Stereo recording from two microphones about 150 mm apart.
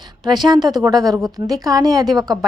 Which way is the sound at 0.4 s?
25° right (ahead or behind).